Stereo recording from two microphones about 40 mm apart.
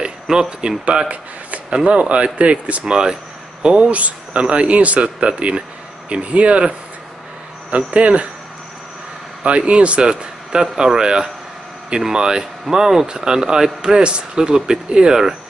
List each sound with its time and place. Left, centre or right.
0.3 s speech: centre
0.8 s speech: right
7.7 s speech: right
9.4 s speech: right